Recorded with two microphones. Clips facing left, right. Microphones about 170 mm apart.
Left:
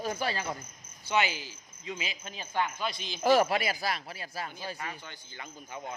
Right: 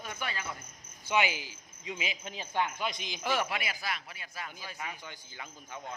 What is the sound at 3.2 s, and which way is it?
Speech, 40° left (ahead or behind).